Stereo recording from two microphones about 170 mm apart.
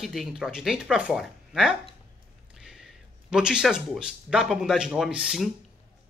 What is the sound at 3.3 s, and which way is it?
Speech, 5° right (ahead or behind).